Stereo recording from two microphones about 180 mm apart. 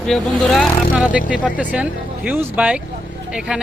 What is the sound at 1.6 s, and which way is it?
Speech, 5° right (ahead or behind).